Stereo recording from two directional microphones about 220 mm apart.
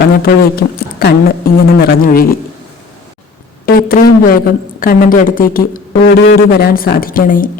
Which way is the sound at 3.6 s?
40° left (ahead or behind).